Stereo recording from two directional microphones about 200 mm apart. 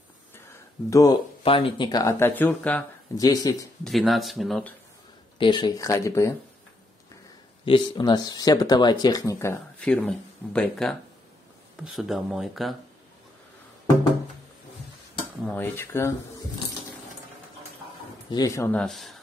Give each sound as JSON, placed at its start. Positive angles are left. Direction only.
{"t": 0.8, "sound": "speech", "side_deg": 15}
{"t": 1.4, "sound": "speech", "side_deg": 25}
{"t": 3.8, "sound": "speech", "side_deg": 0}
{"t": 5.4, "sound": "speech", "side_deg": 25}
{"t": 7.6, "sound": "speech", "side_deg": 25}
{"t": 15.4, "sound": "speech", "side_deg": 10}
{"t": 18.3, "sound": "speech", "side_deg": 15}